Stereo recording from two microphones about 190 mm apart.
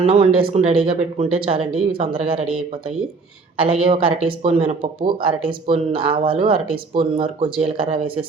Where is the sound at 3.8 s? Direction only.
30° right (ahead or behind).